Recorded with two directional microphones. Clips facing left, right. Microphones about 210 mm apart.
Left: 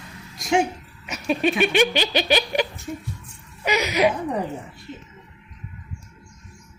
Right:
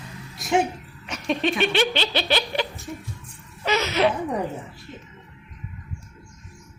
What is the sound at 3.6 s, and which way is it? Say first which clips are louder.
Speech: left 1 dB; 15° left (ahead or behind).